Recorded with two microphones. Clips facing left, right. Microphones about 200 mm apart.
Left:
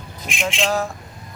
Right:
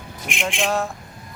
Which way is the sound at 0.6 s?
Centre (ahead or behind).